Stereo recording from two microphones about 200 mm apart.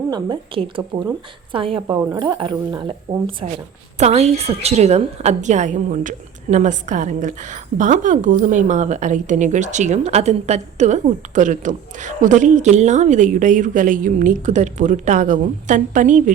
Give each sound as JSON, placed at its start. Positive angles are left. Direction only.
{"t": 0.1, "sound": "a woman's voice", "side_deg": -20}